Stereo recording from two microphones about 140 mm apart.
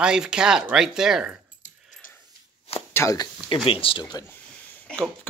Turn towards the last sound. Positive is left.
turn(degrees=10)  # may be behind; listen again after turning